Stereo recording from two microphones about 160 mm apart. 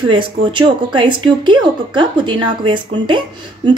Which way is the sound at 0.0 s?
30° right (ahead or behind).